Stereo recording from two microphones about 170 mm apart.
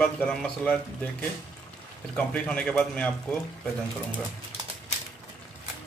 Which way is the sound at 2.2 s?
10° left (ahead or behind).